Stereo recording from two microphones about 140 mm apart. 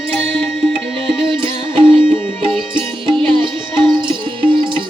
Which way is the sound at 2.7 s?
35° right (ahead or behind).